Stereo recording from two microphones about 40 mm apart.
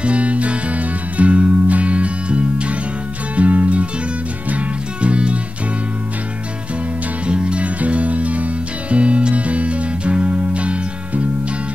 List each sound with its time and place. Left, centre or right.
0.0 s music: right
5.0 s music: right
7.2 s music: right